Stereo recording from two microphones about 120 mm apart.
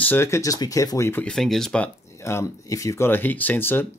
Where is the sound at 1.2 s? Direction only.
5° left (ahead or behind).